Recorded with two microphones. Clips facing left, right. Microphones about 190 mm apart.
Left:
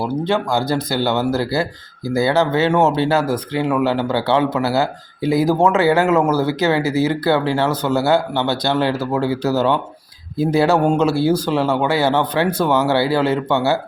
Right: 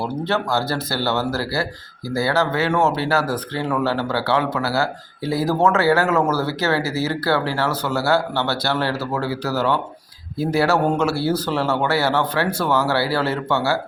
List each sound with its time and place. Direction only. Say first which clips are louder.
0.0 s speech: left 3 dB; 15° left (ahead or behind)